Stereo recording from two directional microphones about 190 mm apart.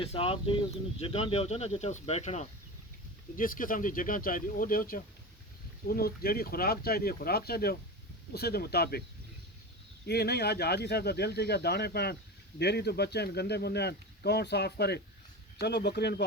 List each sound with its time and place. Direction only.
0.0 s speech: 30° left (ahead or behind)
3.3 s speech: 45° left (ahead or behind)
10.1 s speech: 60° left (ahead or behind)